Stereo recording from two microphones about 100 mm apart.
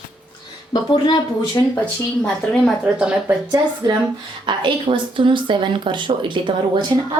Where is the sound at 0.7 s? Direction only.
45° left (ahead or behind).